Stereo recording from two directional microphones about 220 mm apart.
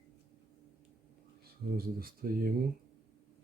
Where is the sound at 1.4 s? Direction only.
40° right (ahead or behind).